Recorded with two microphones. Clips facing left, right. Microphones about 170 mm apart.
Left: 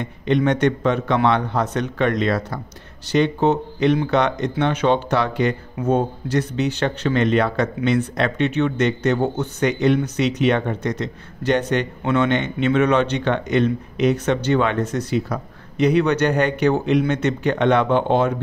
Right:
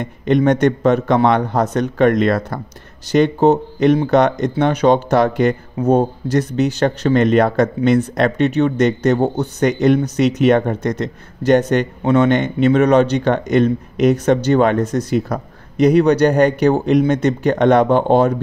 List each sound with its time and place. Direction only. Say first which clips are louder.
0.0 s speech: right 4 dB; 45° right (ahead or behind)